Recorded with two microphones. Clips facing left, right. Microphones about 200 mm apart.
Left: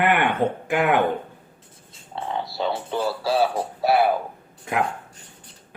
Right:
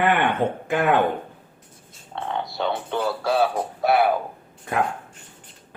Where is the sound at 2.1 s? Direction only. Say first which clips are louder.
Even; 5° left (ahead or behind).